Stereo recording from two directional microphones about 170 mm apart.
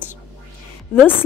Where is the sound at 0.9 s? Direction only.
10° left (ahead or behind).